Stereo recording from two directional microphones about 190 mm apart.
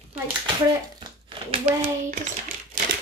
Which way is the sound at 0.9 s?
25° right (ahead or behind).